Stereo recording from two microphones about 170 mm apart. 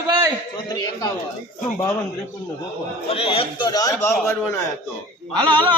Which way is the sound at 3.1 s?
35° left (ahead or behind).